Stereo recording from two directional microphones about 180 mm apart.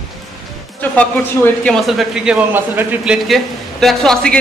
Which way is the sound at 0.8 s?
10° left (ahead or behind).